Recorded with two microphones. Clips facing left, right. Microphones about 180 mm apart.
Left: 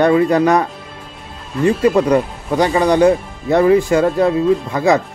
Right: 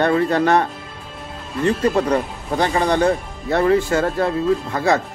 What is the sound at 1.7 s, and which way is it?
Speech, 10° left (ahead or behind).